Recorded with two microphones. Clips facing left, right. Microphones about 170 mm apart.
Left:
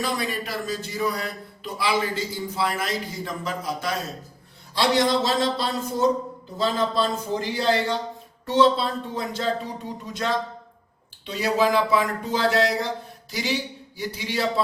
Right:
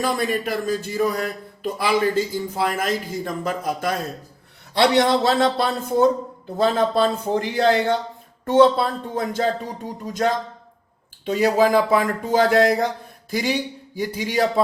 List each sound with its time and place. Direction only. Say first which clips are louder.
0.0 s a man's voice: right 5 dB; 50° right (ahead or behind)